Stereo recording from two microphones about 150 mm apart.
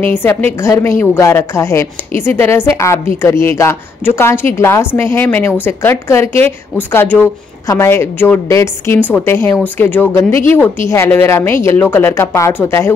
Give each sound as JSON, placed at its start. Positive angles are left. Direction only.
{"t": 0.0, "sound": "a woman's voice", "side_deg": 15}